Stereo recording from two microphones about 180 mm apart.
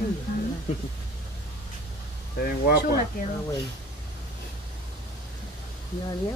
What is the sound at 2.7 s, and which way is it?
Speech, 65° left (ahead or behind).